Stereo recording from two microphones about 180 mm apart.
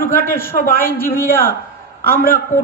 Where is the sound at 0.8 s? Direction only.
10° left (ahead or behind).